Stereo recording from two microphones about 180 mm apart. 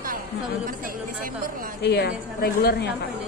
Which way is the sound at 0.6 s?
50° right (ahead or behind).